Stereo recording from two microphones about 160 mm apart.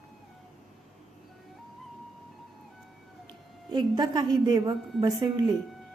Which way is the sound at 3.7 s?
25° right (ahead or behind).